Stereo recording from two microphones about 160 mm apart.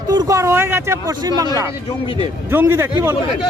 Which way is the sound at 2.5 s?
15° right (ahead or behind).